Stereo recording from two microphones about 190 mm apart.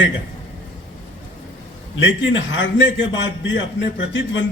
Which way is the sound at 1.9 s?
75° left (ahead or behind).